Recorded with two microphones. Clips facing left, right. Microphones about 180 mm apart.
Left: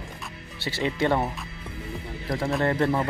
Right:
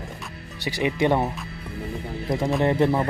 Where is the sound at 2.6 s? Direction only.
20° right (ahead or behind).